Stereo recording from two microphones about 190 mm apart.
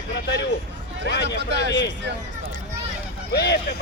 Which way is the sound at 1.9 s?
65° right (ahead or behind).